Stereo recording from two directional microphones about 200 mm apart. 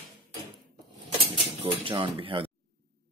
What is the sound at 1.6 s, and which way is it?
Speech, 25° right (ahead or behind).